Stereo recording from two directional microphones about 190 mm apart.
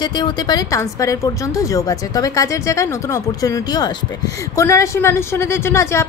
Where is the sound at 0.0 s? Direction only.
25° left (ahead or behind).